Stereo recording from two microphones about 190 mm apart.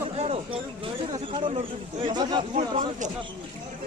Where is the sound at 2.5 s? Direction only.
35° right (ahead or behind).